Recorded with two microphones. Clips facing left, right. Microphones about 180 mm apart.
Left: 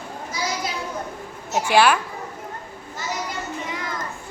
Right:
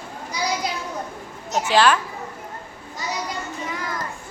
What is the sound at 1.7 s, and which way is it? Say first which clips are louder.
Speech: left 1 dB; 10° left (ahead or behind).